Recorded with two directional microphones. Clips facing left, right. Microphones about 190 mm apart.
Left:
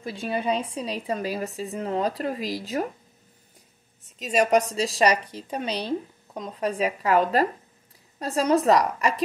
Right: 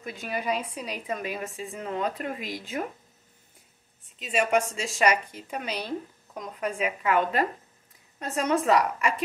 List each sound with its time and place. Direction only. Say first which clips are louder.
0.0 s a woman's voice: left 4 dB; 30° left (ahead or behind)
4.2 s a woman's voice: left 4 dB; 40° left (ahead or behind)